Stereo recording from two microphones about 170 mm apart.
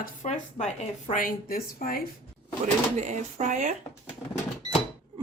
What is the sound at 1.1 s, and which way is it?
Speech, 55° left (ahead or behind).